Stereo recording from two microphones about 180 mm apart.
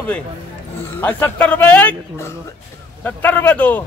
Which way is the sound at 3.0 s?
10° left (ahead or behind).